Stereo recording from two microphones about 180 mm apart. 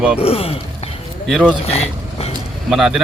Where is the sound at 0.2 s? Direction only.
35° left (ahead or behind).